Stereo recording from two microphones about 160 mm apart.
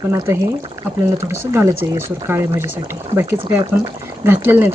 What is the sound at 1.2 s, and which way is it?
Speech, 15° right (ahead or behind).